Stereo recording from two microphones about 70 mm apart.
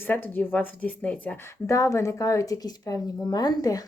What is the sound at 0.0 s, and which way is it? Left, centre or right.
Speech, left.